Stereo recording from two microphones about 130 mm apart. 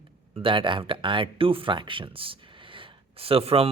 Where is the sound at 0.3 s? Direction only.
40° right (ahead or behind).